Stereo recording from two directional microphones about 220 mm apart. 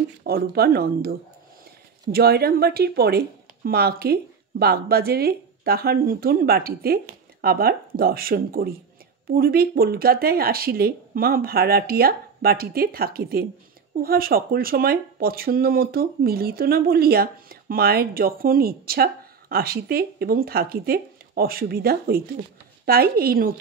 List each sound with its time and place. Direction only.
0.2 s speech: 45° right (ahead or behind)
2.1 s speech: 45° right (ahead or behind)